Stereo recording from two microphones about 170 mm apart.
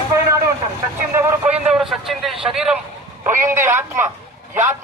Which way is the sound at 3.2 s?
15° right (ahead or behind).